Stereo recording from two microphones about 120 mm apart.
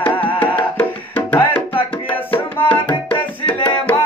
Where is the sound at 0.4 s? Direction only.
15° left (ahead or behind).